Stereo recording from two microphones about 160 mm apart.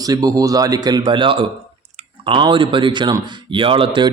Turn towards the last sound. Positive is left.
turn(degrees=-35)  # may be behind; listen again after turning